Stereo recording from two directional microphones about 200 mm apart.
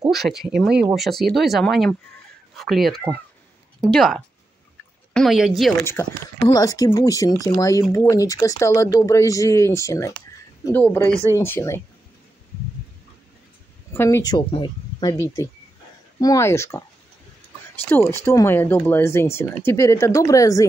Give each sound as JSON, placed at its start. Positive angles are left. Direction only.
{"t": 0.1, "sound": "speech", "side_deg": 0}
{"t": 5.9, "sound": "speech", "side_deg": 15}
{"t": 13.9, "sound": "speech", "side_deg": 15}
{"t": 17.8, "sound": "speech", "side_deg": 10}